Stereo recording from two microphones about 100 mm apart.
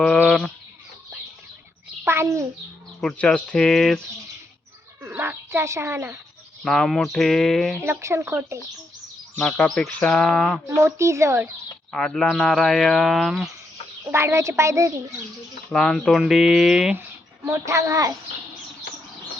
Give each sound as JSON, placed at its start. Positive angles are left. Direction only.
{"t": 0.0, "sound": "chicken", "side_deg": 10}
{"t": 2.0, "sound": "a sound", "side_deg": -30}
{"t": 3.0, "sound": "speech", "side_deg": 10}
{"t": 5.1, "sound": "bird", "side_deg": -15}
{"t": 5.5, "sound": "speech", "side_deg": -30}
{"t": 6.7, "sound": "speech", "side_deg": 5}
{"t": 7.9, "sound": "speech", "side_deg": -25}
{"t": 9.4, "sound": "speech", "side_deg": 10}
{"t": 10.7, "sound": "speech", "side_deg": -30}
{"t": 11.9, "sound": "speech", "side_deg": 10}
{"t": 14.1, "sound": "speech", "side_deg": -25}
{"t": 15.7, "sound": "speech", "side_deg": 10}
{"t": 17.4, "sound": "a child's voice", "side_deg": -30}